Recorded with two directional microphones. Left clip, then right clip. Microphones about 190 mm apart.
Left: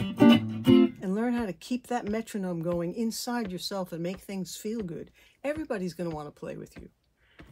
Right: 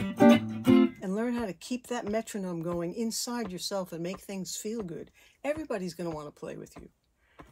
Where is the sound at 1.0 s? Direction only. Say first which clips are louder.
Left 2 dB; 15° left (ahead or behind).